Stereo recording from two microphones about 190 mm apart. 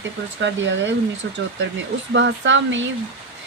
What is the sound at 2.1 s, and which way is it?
Speech, 70° right (ahead or behind).